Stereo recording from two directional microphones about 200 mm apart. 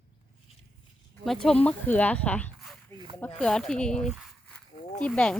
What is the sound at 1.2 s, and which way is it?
Speech, centre (ahead or behind).